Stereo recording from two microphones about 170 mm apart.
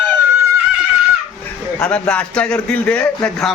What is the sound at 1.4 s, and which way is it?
A man's voice, 10° left (ahead or behind).